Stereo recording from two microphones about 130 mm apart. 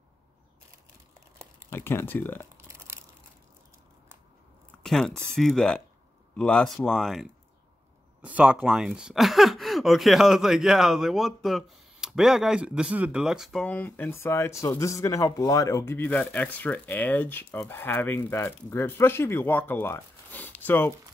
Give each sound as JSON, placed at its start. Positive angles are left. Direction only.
{"t": 1.7, "sound": "speech", "side_deg": 20}
{"t": 2.5, "sound": "tearing", "side_deg": -20}
{"t": 4.8, "sound": "speech", "side_deg": 5}